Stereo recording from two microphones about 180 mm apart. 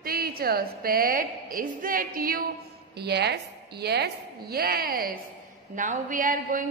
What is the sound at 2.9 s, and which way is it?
A woman's voice, 65° right (ahead or behind).